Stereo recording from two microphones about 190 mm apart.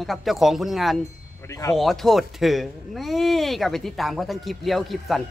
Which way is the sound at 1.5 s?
15° left (ahead or behind).